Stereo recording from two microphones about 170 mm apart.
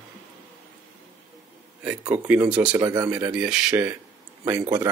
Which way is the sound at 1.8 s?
10° right (ahead or behind).